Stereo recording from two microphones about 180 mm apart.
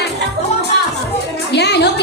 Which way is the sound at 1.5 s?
70° left (ahead or behind).